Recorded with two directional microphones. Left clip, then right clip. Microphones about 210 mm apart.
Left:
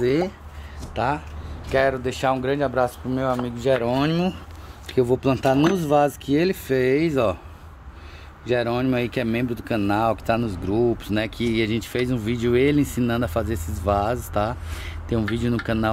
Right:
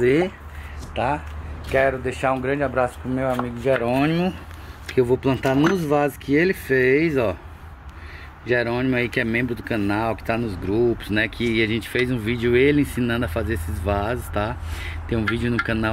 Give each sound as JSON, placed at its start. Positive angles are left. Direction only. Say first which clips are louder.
{"t": 0.0, "sound": "speech", "louder": "right 3 dB", "side_deg": 0}
{"t": 0.9, "sound": "speech", "louder": "right 1 dB", "side_deg": 20}
{"t": 8.5, "sound": "speech", "louder": "right 1 dB", "side_deg": 10}